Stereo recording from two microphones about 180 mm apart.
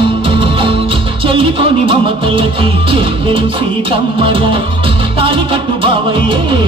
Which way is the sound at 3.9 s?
30° right (ahead or behind).